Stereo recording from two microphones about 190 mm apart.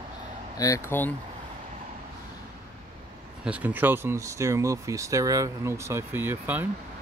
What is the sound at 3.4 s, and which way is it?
Speech, 10° right (ahead or behind).